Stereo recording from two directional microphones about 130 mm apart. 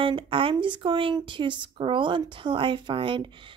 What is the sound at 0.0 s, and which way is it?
Speech, 40° right (ahead or behind).